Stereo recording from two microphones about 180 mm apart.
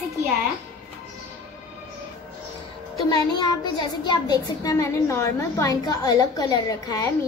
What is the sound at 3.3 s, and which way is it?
A child's voice, 25° left (ahead or behind).